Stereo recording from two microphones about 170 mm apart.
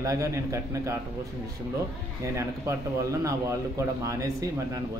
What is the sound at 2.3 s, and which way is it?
A man's voice, 20° right (ahead or behind).